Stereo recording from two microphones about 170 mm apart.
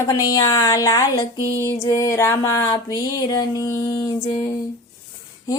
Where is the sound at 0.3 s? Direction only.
20° left (ahead or behind).